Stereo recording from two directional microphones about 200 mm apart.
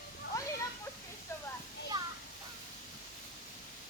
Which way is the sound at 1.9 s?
20° right (ahead or behind).